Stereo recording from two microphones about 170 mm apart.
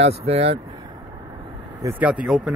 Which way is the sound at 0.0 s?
35° right (ahead or behind).